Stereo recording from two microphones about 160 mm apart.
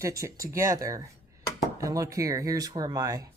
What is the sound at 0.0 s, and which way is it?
A man's voice, 20° right (ahead or behind).